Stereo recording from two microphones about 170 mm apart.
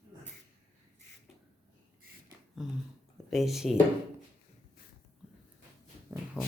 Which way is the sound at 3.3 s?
Centre (ahead or behind).